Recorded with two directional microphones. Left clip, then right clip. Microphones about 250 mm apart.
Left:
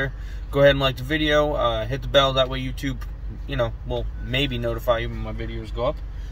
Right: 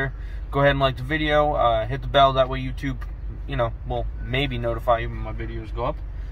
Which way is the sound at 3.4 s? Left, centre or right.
Centre.